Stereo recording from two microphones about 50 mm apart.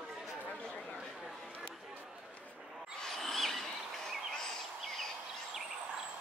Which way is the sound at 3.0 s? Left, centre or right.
Centre.